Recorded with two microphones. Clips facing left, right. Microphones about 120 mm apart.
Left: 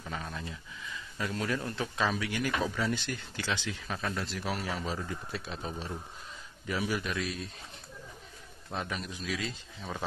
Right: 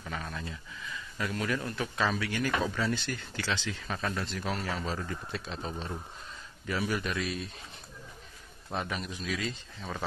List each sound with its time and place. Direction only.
0.0 s a sound: 15° left (ahead or behind)
1.1 s speech: 25° left (ahead or behind)
2.0 s a man's voice: 15° left (ahead or behind)
3.8 s a man's voice: centre (ahead or behind)
7.0 s a man's voice: centre (ahead or behind)
8.7 s a man's voice: centre (ahead or behind)